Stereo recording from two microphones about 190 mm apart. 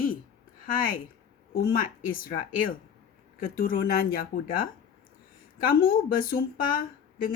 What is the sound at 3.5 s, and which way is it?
Speech, 50° left (ahead or behind).